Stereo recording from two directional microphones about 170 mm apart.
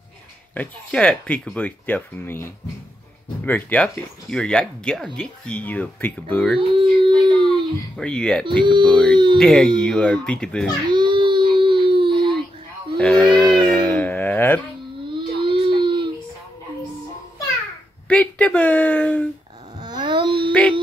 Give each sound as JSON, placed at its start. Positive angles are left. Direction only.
{"t": 0.6, "sound": "speech", "side_deg": 5}
{"t": 6.7, "sound": "a sound", "side_deg": -30}
{"t": 8.0, "sound": "speech", "side_deg": 5}
{"t": 8.5, "sound": "speech", "side_deg": -25}
{"t": 9.4, "sound": "speech", "side_deg": 5}
{"t": 10.9, "sound": "a sound", "side_deg": -25}
{"t": 12.9, "sound": "a sound", "side_deg": 0}
{"t": 15.1, "sound": "baby cry", "side_deg": -30}
{"t": 18.0, "sound": "speech", "side_deg": 10}
{"t": 19.8, "sound": "wail", "side_deg": -25}